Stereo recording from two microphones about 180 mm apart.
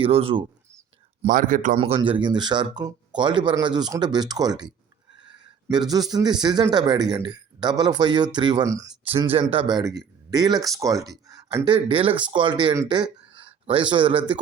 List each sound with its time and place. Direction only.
0.0 s speech: 35° right (ahead or behind)
1.3 s speech: 50° right (ahead or behind)
1.8 s speech: 30° right (ahead or behind)
9.3 s speech: 30° right (ahead or behind)